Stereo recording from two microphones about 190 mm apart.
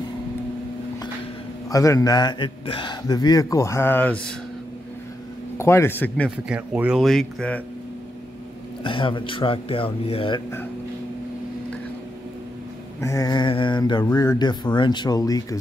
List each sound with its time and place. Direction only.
1.7 s a man's voice: 15° left (ahead or behind)
5.6 s a man's voice: 15° left (ahead or behind)
6.5 s speech: 5° right (ahead or behind)
8.8 s a man's voice: 25° left (ahead or behind)
13.0 s a man's voice: 15° left (ahead or behind)